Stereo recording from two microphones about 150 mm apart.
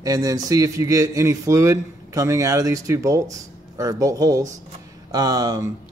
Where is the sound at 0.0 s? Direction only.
25° right (ahead or behind).